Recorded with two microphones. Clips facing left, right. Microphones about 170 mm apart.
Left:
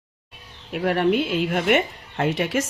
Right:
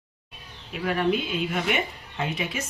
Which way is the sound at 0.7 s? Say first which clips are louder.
Left 4 dB; 65° left (ahead or behind).